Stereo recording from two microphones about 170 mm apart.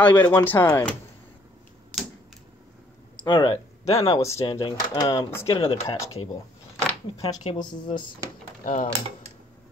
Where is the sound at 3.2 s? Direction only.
25° left (ahead or behind).